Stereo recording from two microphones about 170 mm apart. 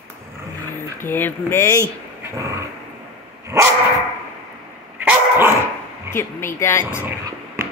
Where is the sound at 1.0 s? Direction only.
10° left (ahead or behind).